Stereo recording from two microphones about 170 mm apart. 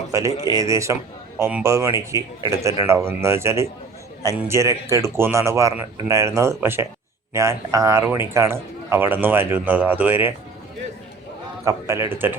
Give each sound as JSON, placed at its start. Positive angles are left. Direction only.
{"t": 0.1, "sound": "speech", "side_deg": -20}
{"t": 0.3, "sound": "speech", "side_deg": 25}
{"t": 0.6, "sound": "a man's voice", "side_deg": -15}
{"t": 11.6, "sound": "a man's voice", "side_deg": -15}